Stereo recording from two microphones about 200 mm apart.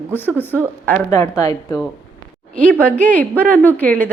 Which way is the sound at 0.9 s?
15° left (ahead or behind).